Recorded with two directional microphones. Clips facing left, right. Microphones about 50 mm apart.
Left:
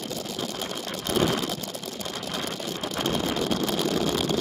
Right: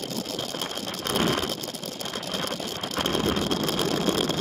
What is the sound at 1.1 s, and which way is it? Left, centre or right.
Ratchet, right.